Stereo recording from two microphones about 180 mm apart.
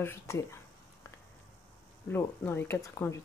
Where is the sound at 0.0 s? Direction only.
15° left (ahead or behind).